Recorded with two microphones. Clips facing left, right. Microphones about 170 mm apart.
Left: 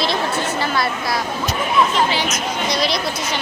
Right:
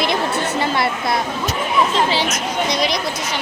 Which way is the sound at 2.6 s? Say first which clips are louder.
Even; 20° right (ahead or behind).